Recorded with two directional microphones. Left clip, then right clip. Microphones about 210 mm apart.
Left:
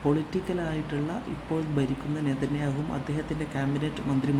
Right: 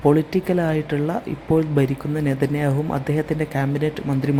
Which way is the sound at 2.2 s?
30° right (ahead or behind).